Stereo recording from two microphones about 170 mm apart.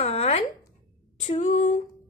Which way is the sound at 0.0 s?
35° left (ahead or behind).